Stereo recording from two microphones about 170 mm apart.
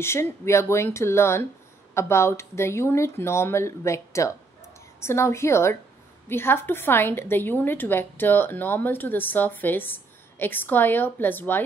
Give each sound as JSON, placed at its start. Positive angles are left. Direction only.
{"t": 0.0, "sound": "a woman's voice", "side_deg": 15}